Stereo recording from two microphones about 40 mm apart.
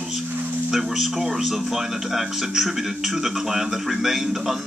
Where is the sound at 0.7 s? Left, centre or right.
Centre.